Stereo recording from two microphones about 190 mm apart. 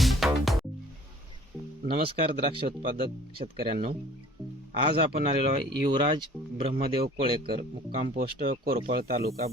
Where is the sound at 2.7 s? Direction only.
50° right (ahead or behind).